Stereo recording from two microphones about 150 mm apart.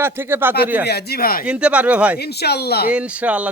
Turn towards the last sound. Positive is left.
turn(degrees=-10)  # may be behind; listen again after turning